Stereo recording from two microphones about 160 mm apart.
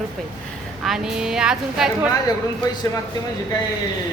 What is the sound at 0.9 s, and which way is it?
Speech, 5° right (ahead or behind).